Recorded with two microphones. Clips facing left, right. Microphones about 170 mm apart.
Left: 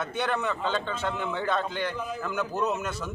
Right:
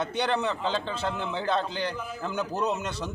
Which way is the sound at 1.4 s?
30° right (ahead or behind).